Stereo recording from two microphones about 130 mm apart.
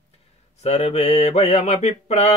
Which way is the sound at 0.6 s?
55° left (ahead or behind).